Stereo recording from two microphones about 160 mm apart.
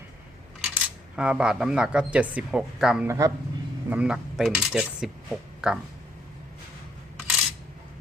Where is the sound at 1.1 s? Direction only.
5° right (ahead or behind).